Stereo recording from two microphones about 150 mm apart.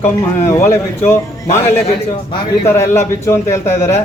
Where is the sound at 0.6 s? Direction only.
15° left (ahead or behind).